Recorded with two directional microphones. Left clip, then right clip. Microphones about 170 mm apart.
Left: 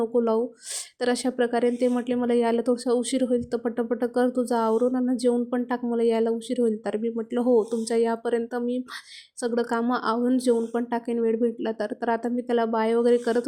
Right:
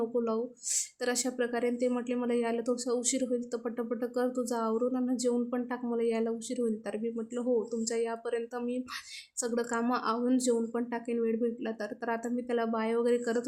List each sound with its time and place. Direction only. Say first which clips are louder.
0.0 s speech: left 8 dB; 25° left (ahead or behind)